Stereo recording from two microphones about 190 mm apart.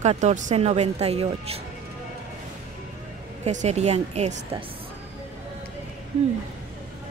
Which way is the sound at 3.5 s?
35° right (ahead or behind).